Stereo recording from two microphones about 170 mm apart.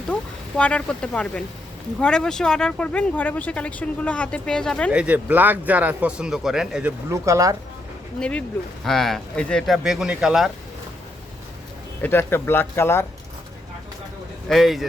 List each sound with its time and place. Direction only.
0.1 s speech: 5° left (ahead or behind)
4.9 s speech: 10° right (ahead or behind)
7.1 s speech: 20° right (ahead or behind)
8.2 s speech: 5° left (ahead or behind)
12.0 s speech: 15° left (ahead or behind)
14.5 s speech: centre (ahead or behind)